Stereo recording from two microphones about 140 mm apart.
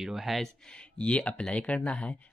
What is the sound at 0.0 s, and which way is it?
Speech, centre (ahead or behind).